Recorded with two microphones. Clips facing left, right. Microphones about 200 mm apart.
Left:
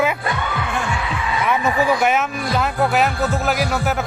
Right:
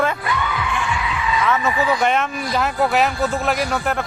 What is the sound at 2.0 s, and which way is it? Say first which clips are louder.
A man's voice: left 1 dB; 5° left (ahead or behind).